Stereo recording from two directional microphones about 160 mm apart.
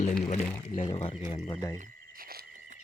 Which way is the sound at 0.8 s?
45° left (ahead or behind).